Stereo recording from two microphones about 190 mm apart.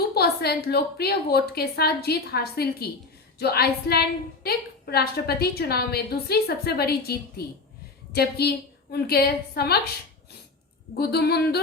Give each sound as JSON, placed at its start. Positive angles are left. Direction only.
{"t": 0.1, "sound": "a woman's voice", "side_deg": 55}
{"t": 10.9, "sound": "a woman's voice", "side_deg": 55}